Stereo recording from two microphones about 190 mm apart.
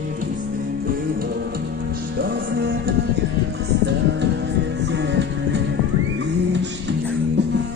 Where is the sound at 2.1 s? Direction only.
55° right (ahead or behind).